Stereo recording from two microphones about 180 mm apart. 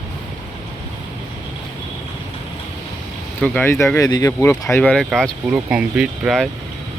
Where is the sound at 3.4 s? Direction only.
10° left (ahead or behind).